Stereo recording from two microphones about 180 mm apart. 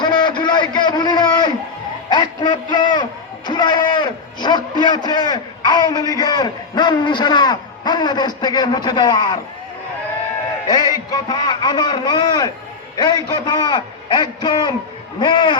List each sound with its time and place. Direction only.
0.0 s a sound: 25° left (ahead or behind)
8.4 s a man's voice: 25° left (ahead or behind)
10.9 s a man's voice: 20° left (ahead or behind)